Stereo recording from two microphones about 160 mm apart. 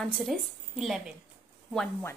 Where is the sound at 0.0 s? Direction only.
Centre (ahead or behind).